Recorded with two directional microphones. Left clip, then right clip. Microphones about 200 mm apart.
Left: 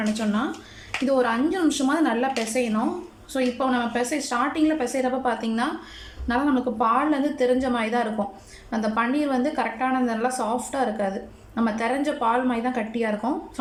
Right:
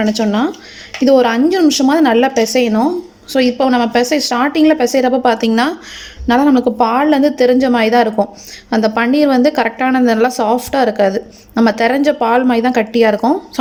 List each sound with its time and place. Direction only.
0.2 s a woman's voice: 40° right (ahead or behind)